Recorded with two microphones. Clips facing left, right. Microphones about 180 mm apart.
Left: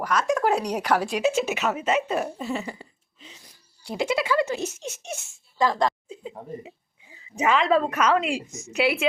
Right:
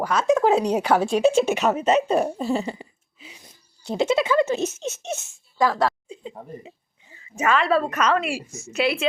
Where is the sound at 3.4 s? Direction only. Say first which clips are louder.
Right 3 dB; 25° right (ahead or behind).